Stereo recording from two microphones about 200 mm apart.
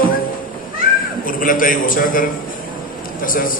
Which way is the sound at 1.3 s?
45° left (ahead or behind).